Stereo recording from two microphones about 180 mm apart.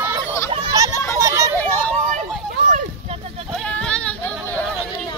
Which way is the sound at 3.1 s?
35° right (ahead or behind).